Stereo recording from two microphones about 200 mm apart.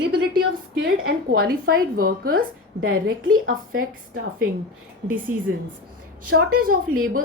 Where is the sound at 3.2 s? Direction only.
90° right.